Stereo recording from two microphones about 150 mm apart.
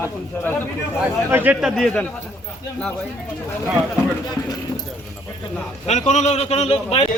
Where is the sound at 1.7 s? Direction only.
5° left (ahead or behind).